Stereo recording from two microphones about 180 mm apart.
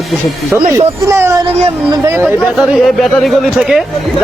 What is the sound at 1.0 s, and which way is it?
Speech, 15° right (ahead or behind).